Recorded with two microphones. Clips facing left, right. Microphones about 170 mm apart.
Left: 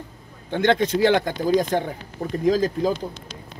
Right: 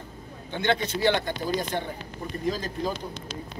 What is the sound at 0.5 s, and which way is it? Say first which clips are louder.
Speech: left 7 dB; 90° left.